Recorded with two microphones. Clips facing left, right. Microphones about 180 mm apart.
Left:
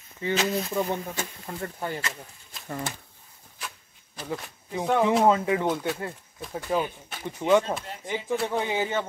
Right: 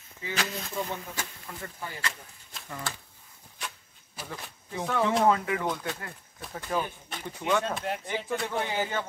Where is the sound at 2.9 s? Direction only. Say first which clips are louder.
Left 2 dB; 20° left (ahead or behind).